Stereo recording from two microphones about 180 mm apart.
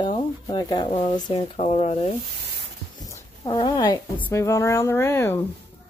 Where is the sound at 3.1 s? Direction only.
25° left (ahead or behind).